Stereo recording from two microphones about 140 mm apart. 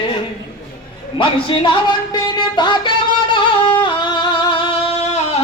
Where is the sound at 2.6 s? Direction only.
35° left (ahead or behind).